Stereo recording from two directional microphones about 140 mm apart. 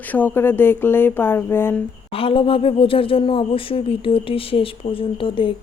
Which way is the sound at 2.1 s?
40° left (ahead or behind).